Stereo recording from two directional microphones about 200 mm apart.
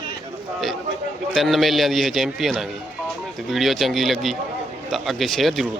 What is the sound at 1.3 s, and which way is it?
A man's voice, centre (ahead or behind).